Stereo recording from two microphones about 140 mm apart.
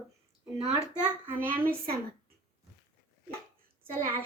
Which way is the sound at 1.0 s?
15° right (ahead or behind).